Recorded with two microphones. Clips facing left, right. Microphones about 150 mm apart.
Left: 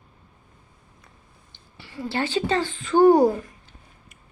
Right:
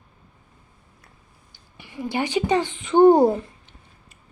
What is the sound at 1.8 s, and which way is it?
Speech, 15° right (ahead or behind).